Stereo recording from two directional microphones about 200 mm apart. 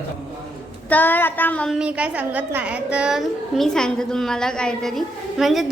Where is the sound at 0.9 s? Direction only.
10° left (ahead or behind).